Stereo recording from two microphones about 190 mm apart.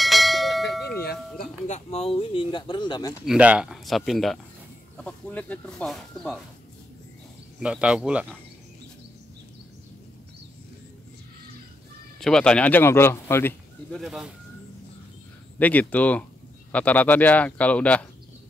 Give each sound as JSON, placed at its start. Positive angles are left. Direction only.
{"t": 0.0, "sound": "bell", "side_deg": 0}
{"t": 1.7, "sound": "speech", "side_deg": 35}
{"t": 3.3, "sound": "speech", "side_deg": -5}
{"t": 7.6, "sound": "speech", "side_deg": -5}
{"t": 12.2, "sound": "speech", "side_deg": 5}
{"t": 13.9, "sound": "speech", "side_deg": 0}
{"t": 15.6, "sound": "speech", "side_deg": 10}